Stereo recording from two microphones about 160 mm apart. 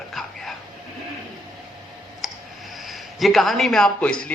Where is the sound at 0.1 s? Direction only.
Centre (ahead or behind).